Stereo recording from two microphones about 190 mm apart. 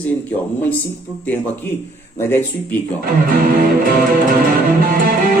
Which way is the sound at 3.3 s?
50° right (ahead or behind).